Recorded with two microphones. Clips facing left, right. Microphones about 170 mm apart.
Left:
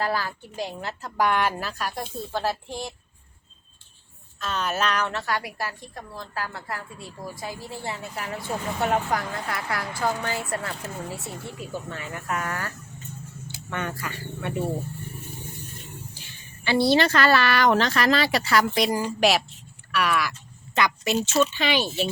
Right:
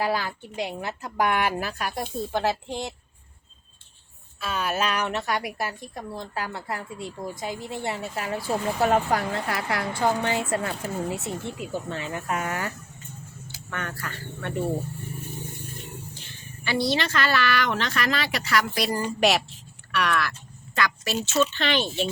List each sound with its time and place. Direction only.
0.0 s speech: 15° right (ahead or behind)
4.4 s a woman's voice: 10° right (ahead or behind)
13.7 s speech: 20° left (ahead or behind)
16.6 s speech: 30° left (ahead or behind); by 20.3 s 5° left (ahead or behind)
20.7 s a woman's voice: 20° left (ahead or behind)